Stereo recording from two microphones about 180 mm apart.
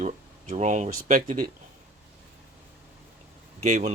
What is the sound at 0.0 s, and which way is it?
Speech, 45° right (ahead or behind).